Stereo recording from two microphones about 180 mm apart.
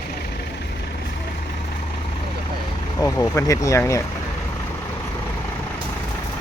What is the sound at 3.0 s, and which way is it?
Speech, 15° left (ahead or behind).